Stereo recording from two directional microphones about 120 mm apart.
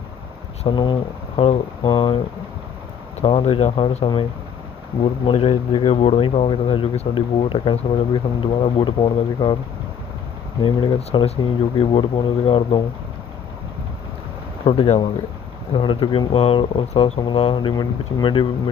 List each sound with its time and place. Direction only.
0.7 s speech: 40° left (ahead or behind)
1.4 s speech: 55° left (ahead or behind)
1.9 s speech: 40° left (ahead or behind)
3.3 s speech: 55° left (ahead or behind)
10.6 s speech: 45° left (ahead or behind)
14.6 s speech: 50° left (ahead or behind)
15.7 s speech: 45° left (ahead or behind)